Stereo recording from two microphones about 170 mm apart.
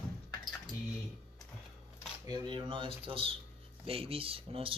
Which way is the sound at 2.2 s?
25° right (ahead or behind).